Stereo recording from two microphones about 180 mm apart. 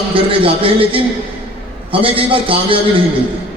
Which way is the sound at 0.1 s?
30° right (ahead or behind).